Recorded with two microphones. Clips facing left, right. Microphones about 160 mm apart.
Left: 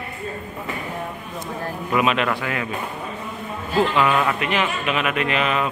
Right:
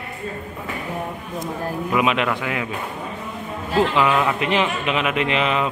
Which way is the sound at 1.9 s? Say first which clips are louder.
Left 1 dB; 15° right (ahead or behind).